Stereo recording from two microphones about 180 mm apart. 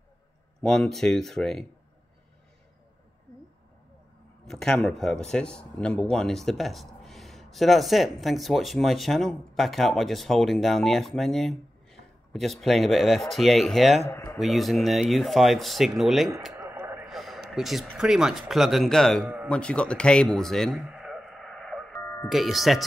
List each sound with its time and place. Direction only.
0.6 s speech: 5° left (ahead or behind)
4.5 s speech: 5° left (ahead or behind)
14.0 s speech: 15° left (ahead or behind)
14.4 s speech: centre (ahead or behind)
16.5 s a sound: 10° right (ahead or behind)
17.1 s speech: centre (ahead or behind)
19.2 s speech: 10° right (ahead or behind)
19.5 s a sound: 5° left (ahead or behind)
22.0 s music: 15° left (ahead or behind)
22.3 s speech: centre (ahead or behind)